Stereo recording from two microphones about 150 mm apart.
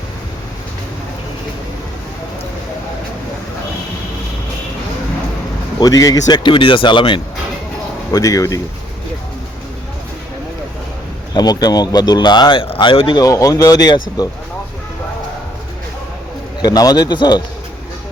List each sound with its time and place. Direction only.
5.8 s speech: 25° left (ahead or behind)
8.1 s speech: 20° left (ahead or behind)
11.3 s speech: 25° left (ahead or behind)
16.6 s speech: 25° left (ahead or behind)